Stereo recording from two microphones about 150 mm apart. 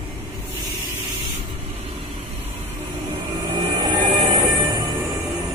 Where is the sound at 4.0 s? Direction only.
30° right (ahead or behind).